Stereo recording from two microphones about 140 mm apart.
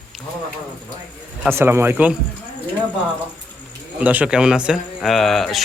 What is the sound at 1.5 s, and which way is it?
Speech, 15° right (ahead or behind).